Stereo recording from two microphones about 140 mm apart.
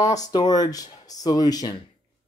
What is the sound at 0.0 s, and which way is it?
Speech, 25° left (ahead or behind).